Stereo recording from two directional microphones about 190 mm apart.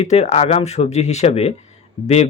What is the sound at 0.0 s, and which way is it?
Speech, 35° left (ahead or behind).